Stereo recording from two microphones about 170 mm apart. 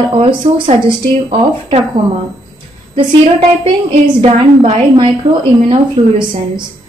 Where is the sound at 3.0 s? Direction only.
30° right (ahead or behind).